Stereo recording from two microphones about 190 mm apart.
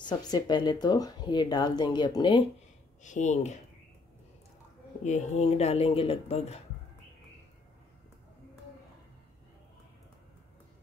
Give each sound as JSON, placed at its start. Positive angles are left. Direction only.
{"t": 0.0, "sound": "speech", "side_deg": 20}
{"t": 3.0, "sound": "speech", "side_deg": 40}
{"t": 5.0, "sound": "speech", "side_deg": 35}